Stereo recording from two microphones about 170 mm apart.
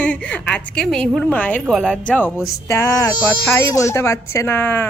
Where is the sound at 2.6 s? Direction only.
15° left (ahead or behind).